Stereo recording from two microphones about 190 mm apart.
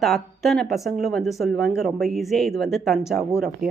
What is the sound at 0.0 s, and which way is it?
Speech, centre (ahead or behind).